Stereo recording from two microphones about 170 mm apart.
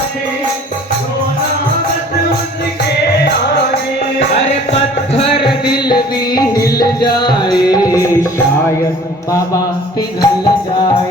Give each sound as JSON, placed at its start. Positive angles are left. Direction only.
{"t": 5.4, "sound": "music", "side_deg": 25}
{"t": 9.3, "sound": "a sound", "side_deg": 20}
{"t": 10.2, "sound": "music", "side_deg": 25}